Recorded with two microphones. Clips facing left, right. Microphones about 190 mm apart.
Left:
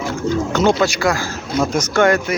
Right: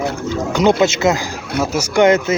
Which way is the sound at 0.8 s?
20° right (ahead or behind).